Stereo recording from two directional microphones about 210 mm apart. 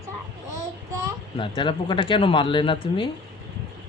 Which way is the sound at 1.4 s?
25° left (ahead or behind).